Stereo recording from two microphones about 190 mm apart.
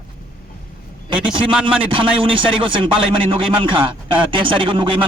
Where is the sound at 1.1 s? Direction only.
25° right (ahead or behind).